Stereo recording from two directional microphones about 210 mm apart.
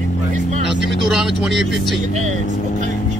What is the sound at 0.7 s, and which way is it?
Speech, centre (ahead or behind).